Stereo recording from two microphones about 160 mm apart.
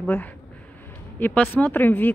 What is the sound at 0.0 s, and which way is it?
Speech, 10° left (ahead or behind).